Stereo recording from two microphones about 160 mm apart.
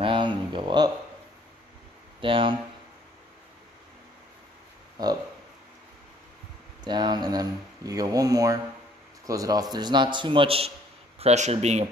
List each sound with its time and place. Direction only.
0.0 s a sound: 30° right (ahead or behind)
2.2 s speech: 30° right (ahead or behind)
6.8 s speech: 25° right (ahead or behind)